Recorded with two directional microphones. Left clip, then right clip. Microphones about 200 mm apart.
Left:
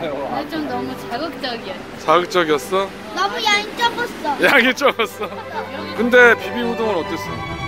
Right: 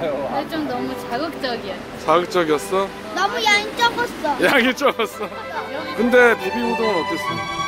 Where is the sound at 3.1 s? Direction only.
25° right (ahead or behind).